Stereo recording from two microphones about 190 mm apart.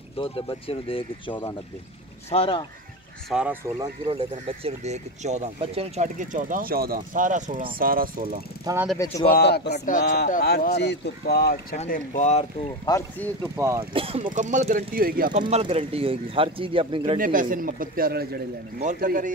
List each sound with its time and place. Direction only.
0.2 s speech: 30° left (ahead or behind)
3.3 s speech: 5° right (ahead or behind)
4.5 s a man's voice: 35° right (ahead or behind); by 8.4 s 50° right (ahead or behind)
8.9 s speech: 15° left (ahead or behind)
9.3 s speech: 60° left (ahead or behind)
9.8 s speech: 45° left (ahead or behind)
11.9 s speech: 45° left (ahead or behind)
12.9 s speech: 20° left (ahead or behind)
13.4 s speech: 15° right (ahead or behind)
13.9 s speech: 30° right (ahead or behind); by 15.4 s 50° right (ahead or behind)
15.4 s speech: 30° right (ahead or behind)
17.2 s a man's voice: 45° right (ahead or behind)